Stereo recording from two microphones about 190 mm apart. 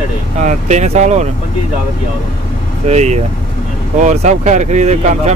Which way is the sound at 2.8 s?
35° right (ahead or behind).